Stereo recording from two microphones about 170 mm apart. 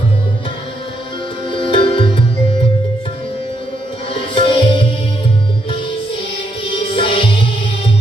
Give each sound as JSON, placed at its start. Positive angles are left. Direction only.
{"t": 1.5, "sound": "music", "side_deg": 30}
{"t": 4.4, "sound": "tabla", "side_deg": 30}
{"t": 6.9, "sound": "music", "side_deg": 30}